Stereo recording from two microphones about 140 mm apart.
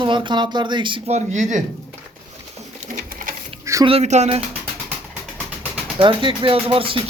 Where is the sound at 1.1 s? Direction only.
60° right (ahead or behind).